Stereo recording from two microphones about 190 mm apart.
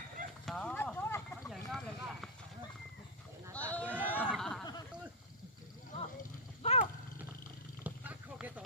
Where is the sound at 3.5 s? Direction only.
10° left (ahead or behind).